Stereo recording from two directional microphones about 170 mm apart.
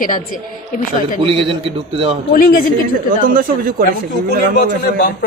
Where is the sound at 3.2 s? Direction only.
55° right (ahead or behind).